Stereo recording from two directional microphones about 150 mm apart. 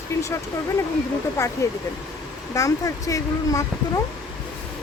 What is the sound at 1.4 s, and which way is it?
Speech, 20° left (ahead or behind).